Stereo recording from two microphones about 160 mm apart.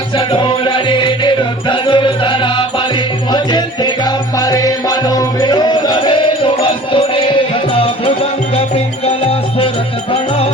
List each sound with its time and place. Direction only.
0.2 s music: 30° left (ahead or behind)